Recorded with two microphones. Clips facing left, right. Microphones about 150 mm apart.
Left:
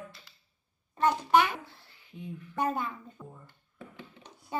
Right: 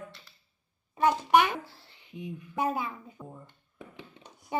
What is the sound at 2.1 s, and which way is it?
A woman's voice, 15° right (ahead or behind).